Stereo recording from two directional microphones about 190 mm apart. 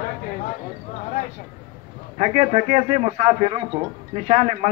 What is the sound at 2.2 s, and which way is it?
A man's voice, 35° right (ahead or behind).